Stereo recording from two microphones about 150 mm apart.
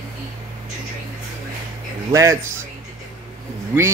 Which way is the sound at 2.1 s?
20° right (ahead or behind).